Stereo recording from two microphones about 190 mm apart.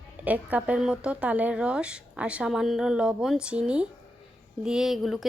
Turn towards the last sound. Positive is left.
turn(degrees=0)  # may be behind; listen again after turning